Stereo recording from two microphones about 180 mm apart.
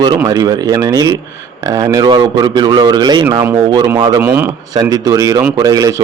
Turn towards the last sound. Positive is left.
turn(degrees=-20)  # may be behind; listen again after turning